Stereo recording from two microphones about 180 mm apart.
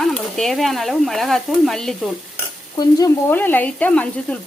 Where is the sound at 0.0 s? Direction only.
5° left (ahead or behind).